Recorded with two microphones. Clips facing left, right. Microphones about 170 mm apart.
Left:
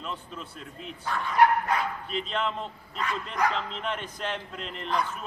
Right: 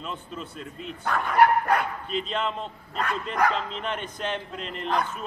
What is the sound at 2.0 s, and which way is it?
Speech, centre (ahead or behind).